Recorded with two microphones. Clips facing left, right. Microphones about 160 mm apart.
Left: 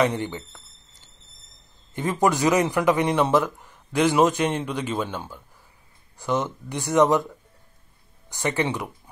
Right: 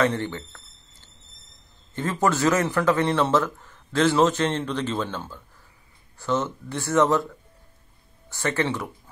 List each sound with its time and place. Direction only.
0.0 s a man's voice: 15° left (ahead or behind)
2.0 s a man's voice: 15° left (ahead or behind)